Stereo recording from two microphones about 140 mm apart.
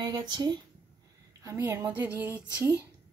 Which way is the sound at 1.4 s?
20° right (ahead or behind).